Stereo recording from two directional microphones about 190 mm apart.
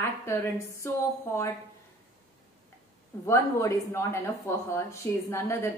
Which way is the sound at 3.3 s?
15° left (ahead or behind).